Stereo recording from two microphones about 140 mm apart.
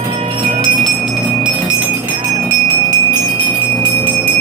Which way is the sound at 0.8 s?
5° right (ahead or behind).